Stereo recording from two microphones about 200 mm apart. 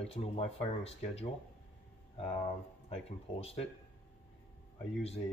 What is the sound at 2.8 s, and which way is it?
Speech, 30° left (ahead or behind).